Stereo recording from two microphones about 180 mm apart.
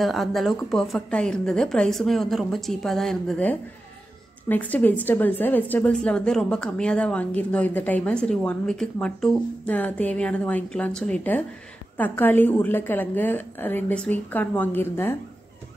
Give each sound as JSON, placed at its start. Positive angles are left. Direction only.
{"t": 0.0, "sound": "a woman's voice", "side_deg": 0}